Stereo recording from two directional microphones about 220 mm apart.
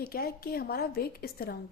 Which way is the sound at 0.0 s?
45° left (ahead or behind).